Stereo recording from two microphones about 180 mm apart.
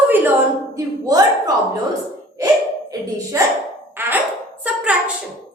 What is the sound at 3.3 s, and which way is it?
Speech, 15° right (ahead or behind).